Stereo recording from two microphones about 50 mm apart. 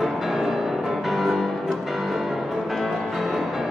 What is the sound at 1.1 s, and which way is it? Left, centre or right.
Music, centre.